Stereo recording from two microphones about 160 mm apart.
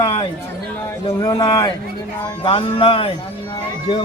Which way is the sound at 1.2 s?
25° left (ahead or behind).